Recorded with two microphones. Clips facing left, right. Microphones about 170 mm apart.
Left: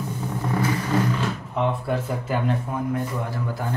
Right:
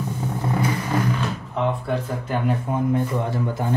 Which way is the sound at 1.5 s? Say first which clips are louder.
Right 1 dB; 5° left (ahead or behind).